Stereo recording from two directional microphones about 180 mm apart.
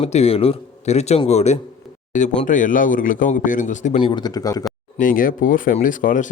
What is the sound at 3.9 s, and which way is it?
Speech, 25° left (ahead or behind).